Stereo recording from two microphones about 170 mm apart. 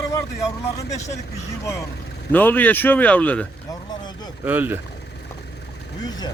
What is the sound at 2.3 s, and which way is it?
Speech, 10° left (ahead or behind).